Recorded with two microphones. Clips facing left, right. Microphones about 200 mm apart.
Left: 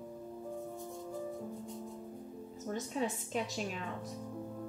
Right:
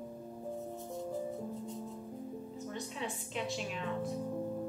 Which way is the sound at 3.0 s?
40° left (ahead or behind).